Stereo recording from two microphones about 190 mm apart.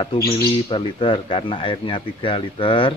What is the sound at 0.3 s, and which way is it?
Speech, 30° left (ahead or behind).